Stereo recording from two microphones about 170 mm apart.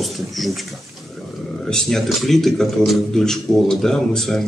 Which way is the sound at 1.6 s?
5° left (ahead or behind).